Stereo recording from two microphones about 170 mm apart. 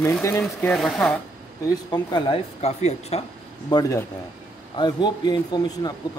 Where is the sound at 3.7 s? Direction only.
20° left (ahead or behind).